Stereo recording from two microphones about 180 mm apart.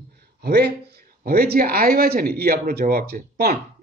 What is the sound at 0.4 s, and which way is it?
Speech, 65° right (ahead or behind).